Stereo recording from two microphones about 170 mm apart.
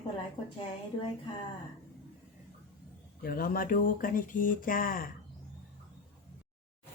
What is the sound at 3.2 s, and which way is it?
Speech, 55° left (ahead or behind).